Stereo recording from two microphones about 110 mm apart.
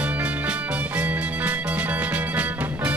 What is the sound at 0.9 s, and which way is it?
Music, 15° right (ahead or behind).